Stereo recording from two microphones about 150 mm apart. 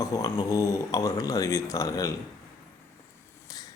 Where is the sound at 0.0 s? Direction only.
25° left (ahead or behind).